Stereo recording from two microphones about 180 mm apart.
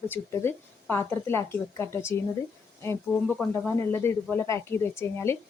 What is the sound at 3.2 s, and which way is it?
Speech, 10° left (ahead or behind).